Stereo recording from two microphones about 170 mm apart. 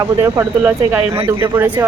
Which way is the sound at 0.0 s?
15° right (ahead or behind).